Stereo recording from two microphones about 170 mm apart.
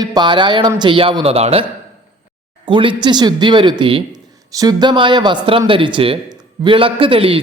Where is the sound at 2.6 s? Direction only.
30° right (ahead or behind).